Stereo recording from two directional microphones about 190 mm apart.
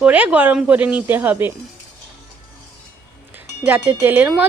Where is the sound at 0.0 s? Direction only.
5° right (ahead or behind).